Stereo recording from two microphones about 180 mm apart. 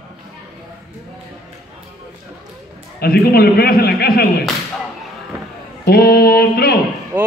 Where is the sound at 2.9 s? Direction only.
60° left (ahead or behind).